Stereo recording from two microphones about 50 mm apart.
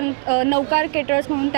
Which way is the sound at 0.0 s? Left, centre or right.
Right.